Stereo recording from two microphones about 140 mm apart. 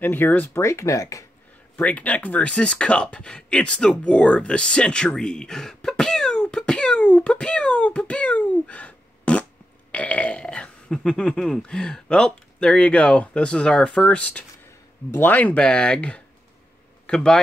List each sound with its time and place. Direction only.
0.0 s speech: 15° left (ahead or behind)
1.8 s a man's voice: 10° left (ahead or behind)